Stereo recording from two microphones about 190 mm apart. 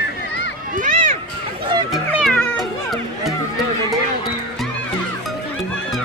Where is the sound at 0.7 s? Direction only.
40° right (ahead or behind).